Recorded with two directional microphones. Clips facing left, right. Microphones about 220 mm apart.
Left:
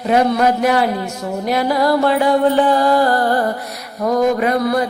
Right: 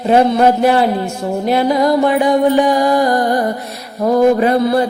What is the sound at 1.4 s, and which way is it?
Music, 25° right (ahead or behind).